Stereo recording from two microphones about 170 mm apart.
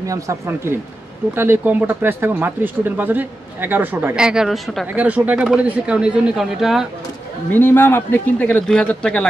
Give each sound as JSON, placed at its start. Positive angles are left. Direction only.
{"t": 0.0, "sound": "speech", "side_deg": -20}
{"t": 7.5, "sound": "speech", "side_deg": 10}